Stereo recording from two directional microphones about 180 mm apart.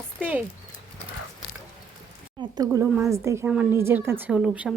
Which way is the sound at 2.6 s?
15° right (ahead or behind).